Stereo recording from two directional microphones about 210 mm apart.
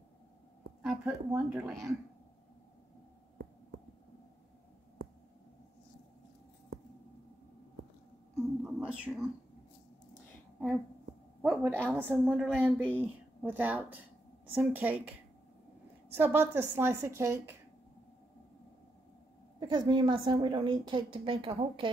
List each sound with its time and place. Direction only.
0.8 s speech: 5° right (ahead or behind)
8.6 s a sound: 5° right (ahead or behind)
11.4 s a woman's voice: 5° right (ahead or behind)
12.5 s a woman's voice: 10° right (ahead or behind)
16.2 s a woman's voice: 10° right (ahead or behind)
19.6 s a woman's voice: 20° right (ahead or behind)